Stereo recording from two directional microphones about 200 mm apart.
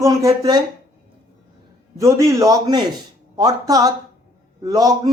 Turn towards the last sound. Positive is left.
turn(degrees=-20)  # may be behind; listen again after turning